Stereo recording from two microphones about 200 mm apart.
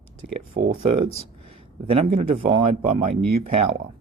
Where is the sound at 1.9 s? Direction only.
30° right (ahead or behind).